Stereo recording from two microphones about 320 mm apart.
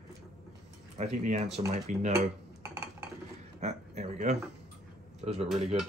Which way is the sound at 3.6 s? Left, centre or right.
Right.